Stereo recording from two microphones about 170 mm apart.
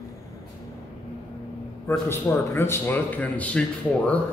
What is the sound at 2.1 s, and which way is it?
A man's voice, 15° left (ahead or behind).